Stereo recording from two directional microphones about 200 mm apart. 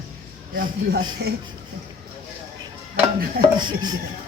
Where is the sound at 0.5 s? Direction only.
45° right (ahead or behind).